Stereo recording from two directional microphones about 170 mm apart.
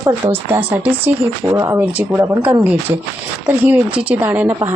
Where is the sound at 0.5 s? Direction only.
10° right (ahead or behind).